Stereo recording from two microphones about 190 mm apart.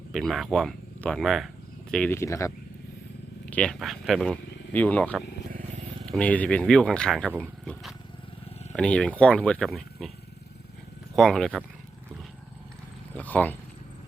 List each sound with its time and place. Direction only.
0.1 s speech: centre (ahead or behind)
3.5 s speech: 5° left (ahead or behind)
5.5 s vehicle: 45° right (ahead or behind)
6.1 s speech: 5° left (ahead or behind)
11.1 s speech: centre (ahead or behind)
13.1 s speech: 10° left (ahead or behind)